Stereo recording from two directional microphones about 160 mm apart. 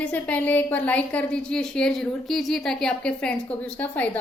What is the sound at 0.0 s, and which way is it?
A woman's voice, 10° left (ahead or behind).